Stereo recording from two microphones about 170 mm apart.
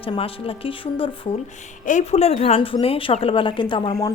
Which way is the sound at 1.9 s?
45° left (ahead or behind).